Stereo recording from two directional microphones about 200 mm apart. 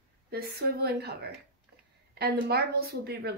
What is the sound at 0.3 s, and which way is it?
Speech, 55° right (ahead or behind).